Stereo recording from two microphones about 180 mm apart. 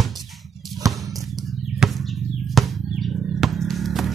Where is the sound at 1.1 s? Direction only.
20° right (ahead or behind).